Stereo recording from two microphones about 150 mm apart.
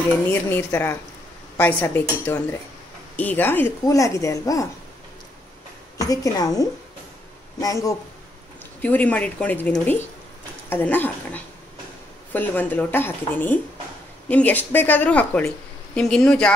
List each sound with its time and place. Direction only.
0.3 s speech: 15° left (ahead or behind)
5.9 s speech: 25° left (ahead or behind)
8.8 s speech: 10° left (ahead or behind)